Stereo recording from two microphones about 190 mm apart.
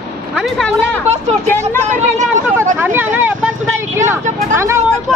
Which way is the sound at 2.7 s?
10° right (ahead or behind).